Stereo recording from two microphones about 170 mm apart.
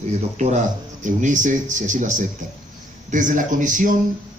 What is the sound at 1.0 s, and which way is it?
A man's voice, 50° right (ahead or behind).